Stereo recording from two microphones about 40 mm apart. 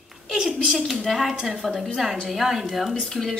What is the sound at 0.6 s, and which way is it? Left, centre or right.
A woman's voice, centre.